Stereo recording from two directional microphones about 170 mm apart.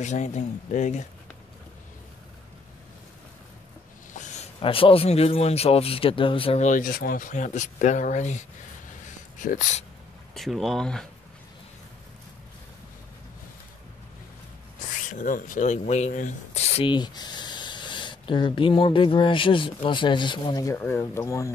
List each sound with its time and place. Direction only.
0.0 s speech: 45° left (ahead or behind)
4.1 s speech: 45° left (ahead or behind)
10.3 s speech: centre (ahead or behind)
15.0 s speech: 50° left (ahead or behind); by 21.5 s 15° left (ahead or behind)